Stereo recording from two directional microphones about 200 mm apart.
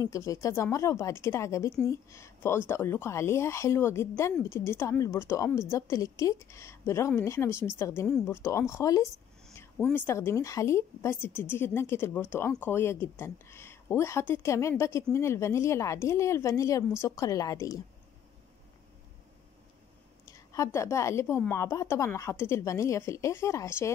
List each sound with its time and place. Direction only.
0.0 s a woman's voice: 15° left (ahead or behind)
20.2 s a woman's voice: 15° left (ahead or behind)